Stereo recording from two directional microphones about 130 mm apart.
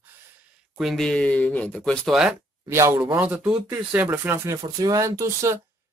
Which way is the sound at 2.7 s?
20° right (ahead or behind).